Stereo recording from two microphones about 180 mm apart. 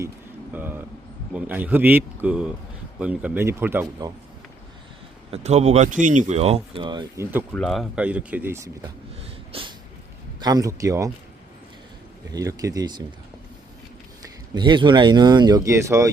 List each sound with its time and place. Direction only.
0.5 s a sound: 10° right (ahead or behind)
1.3 s speech: 10° right (ahead or behind)
5.3 s speech: 40° right (ahead or behind)
7.5 s speech: 5° left (ahead or behind); by 8.9 s 15° right (ahead or behind)
9.2 s sneeze: 30° right (ahead or behind)
10.4 s speech: 20° right (ahead or behind)
12.3 s speech: 20° right (ahead or behind)
14.5 s speech: 25° right (ahead or behind)